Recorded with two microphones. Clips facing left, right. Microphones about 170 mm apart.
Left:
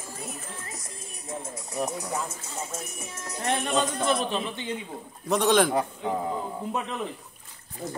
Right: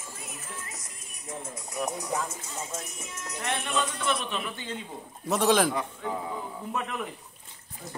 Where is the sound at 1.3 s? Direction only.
25° left (ahead or behind).